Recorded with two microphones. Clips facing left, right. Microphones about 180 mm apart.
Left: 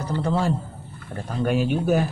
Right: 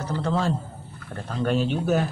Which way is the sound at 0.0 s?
10° left (ahead or behind).